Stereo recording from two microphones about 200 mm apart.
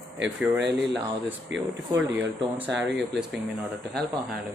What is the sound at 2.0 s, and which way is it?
Speech, 10° right (ahead or behind).